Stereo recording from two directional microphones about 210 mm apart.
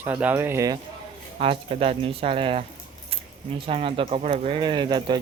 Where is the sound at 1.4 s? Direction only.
25° right (ahead or behind).